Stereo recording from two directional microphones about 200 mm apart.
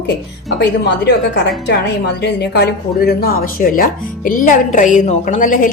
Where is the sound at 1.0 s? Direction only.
60° left (ahead or behind).